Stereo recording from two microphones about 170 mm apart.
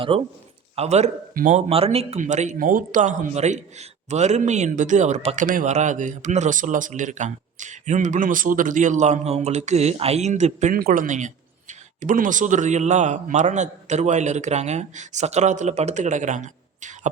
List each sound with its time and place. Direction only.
0.1 s a man's voice: 35° right (ahead or behind)